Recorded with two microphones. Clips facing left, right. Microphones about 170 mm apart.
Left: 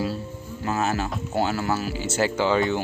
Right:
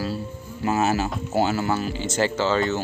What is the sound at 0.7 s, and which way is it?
Speech, 10° right (ahead or behind).